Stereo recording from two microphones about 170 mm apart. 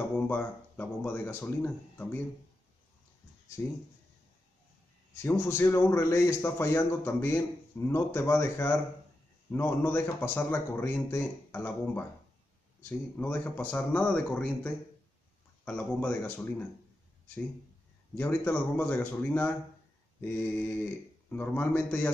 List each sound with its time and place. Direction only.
0.3 s speech: 10° left (ahead or behind)
3.6 s speech: 10° left (ahead or behind)
5.1 s speech: 15° left (ahead or behind)
13.2 s speech: 10° left (ahead or behind)
18.1 s speech: 10° left (ahead or behind)